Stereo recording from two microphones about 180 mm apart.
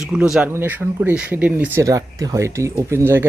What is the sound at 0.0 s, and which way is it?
Speech, 5° right (ahead or behind).